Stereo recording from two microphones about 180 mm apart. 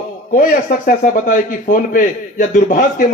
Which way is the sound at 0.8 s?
45° left (ahead or behind).